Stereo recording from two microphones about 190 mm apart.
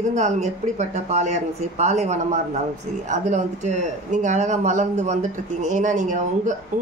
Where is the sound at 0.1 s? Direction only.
40° right (ahead or behind).